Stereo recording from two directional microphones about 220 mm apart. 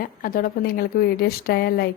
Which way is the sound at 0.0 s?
40° left (ahead or behind).